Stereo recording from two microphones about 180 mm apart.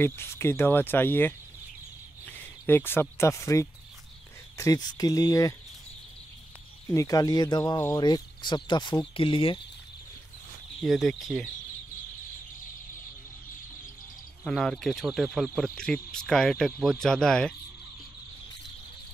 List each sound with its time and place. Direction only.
0.0 s speech: 15° left (ahead or behind)
2.6 s speech: 10° left (ahead or behind)
6.9 s speech: 20° left (ahead or behind)
10.8 s speech: centre (ahead or behind)
14.4 s speech: centre (ahead or behind)